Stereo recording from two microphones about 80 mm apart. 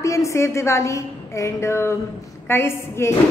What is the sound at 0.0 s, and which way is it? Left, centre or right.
A woman's voice, left.